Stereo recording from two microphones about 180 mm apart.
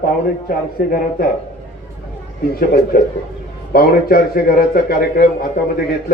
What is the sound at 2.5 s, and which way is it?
A man's voice, 55° left (ahead or behind).